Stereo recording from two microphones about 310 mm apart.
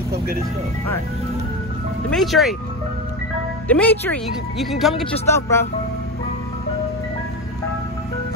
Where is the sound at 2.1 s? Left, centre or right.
Centre.